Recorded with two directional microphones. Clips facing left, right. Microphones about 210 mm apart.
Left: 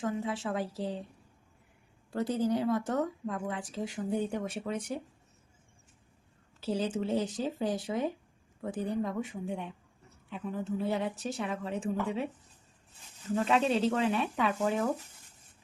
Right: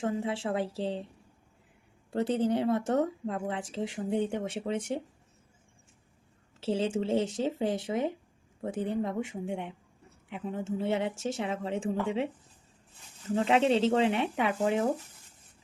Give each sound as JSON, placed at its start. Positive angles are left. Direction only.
{"t": 0.0, "sound": "speech", "side_deg": -25}
{"t": 2.1, "sound": "speech", "side_deg": -25}
{"t": 6.6, "sound": "speech", "side_deg": -25}
{"t": 13.3, "sound": "speech", "side_deg": -25}